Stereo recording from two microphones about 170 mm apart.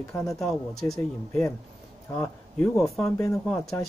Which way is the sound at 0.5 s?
Centre (ahead or behind).